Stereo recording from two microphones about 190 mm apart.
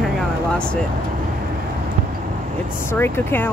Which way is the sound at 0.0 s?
5° left (ahead or behind).